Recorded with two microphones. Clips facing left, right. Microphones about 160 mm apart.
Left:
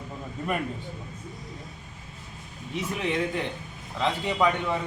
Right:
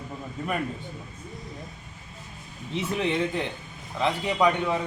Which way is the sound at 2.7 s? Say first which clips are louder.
Right 2 dB; 30° right (ahead or behind).